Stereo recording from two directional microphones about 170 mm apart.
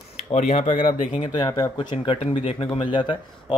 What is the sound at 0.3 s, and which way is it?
Speech, 40° left (ahead or behind).